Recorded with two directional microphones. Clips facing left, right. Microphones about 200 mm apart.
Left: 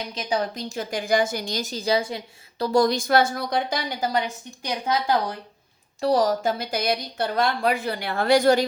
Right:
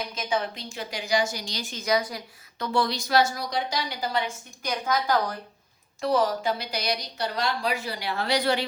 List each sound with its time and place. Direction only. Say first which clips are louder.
0.1 s a woman's voice: left 6 dB; 35° left (ahead or behind)
4.7 s a woman's voice: left 2 dB; 25° left (ahead or behind)
6.0 s a woman's voice: left 3 dB; 35° left (ahead or behind)